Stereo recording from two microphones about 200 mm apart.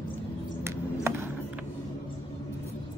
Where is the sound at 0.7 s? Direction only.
10° right (ahead or behind).